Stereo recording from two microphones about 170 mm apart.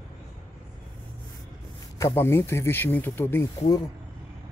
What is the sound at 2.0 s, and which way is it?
Speech, 15° left (ahead or behind).